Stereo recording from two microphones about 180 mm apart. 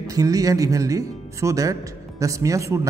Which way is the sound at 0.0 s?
20° right (ahead or behind).